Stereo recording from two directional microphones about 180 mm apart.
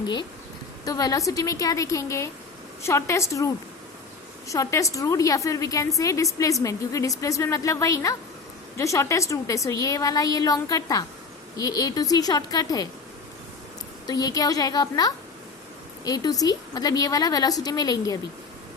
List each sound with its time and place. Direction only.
0.0 s a woman's voice: 25° left (ahead or behind)
14.1 s a woman's voice: 20° left (ahead or behind)